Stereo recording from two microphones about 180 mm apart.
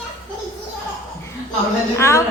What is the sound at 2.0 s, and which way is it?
Speech, 15° left (ahead or behind).